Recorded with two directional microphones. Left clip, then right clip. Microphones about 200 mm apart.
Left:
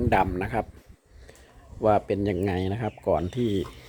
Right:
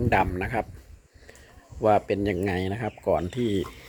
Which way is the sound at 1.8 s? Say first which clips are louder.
Right 1 dB; 5° left (ahead or behind).